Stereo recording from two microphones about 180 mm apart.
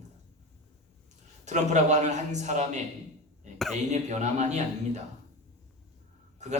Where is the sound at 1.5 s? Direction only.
40° right (ahead or behind).